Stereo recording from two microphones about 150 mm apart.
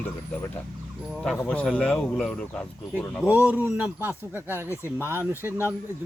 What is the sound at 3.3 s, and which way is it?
Speech, 10° right (ahead or behind).